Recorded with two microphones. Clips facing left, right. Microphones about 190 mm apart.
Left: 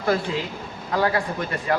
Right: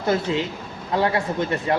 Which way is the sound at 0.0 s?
25° right (ahead or behind).